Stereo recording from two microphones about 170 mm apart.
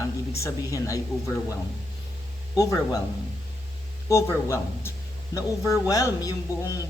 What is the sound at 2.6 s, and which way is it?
Speech, 20° left (ahead or behind).